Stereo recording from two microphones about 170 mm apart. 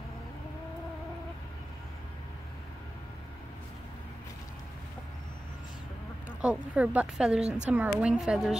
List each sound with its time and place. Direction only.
6.4 s a woman's voice: 10° right (ahead or behind)
7.4 s a woman's voice: 45° right (ahead or behind)
7.7 s a woman's voice: 10° right (ahead or behind)